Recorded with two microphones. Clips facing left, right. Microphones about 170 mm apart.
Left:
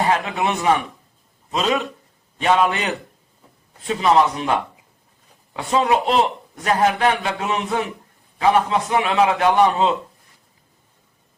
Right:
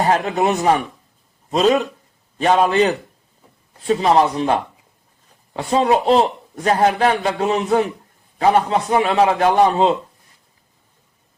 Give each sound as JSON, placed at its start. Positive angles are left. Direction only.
{"t": 0.0, "sound": "a man's voice", "side_deg": -40}
{"t": 5.5, "sound": "a man's voice", "side_deg": -30}